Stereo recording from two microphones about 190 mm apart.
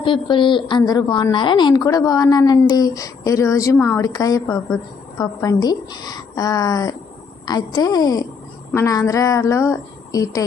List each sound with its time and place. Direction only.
0.0 s a woman's voice: 25° left (ahead or behind)